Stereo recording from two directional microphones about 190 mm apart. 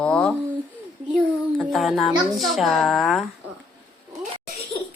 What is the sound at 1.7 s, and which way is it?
A woman's voice, centre (ahead or behind).